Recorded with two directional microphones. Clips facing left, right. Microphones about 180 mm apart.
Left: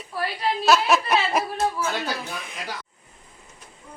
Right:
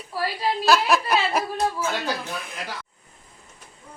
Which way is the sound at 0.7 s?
5° left (ahead or behind).